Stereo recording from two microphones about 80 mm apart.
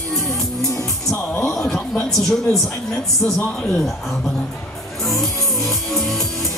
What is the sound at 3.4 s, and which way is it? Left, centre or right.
Speech, left.